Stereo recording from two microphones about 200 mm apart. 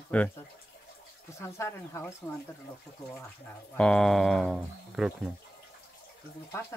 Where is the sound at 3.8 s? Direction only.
5° left (ahead or behind).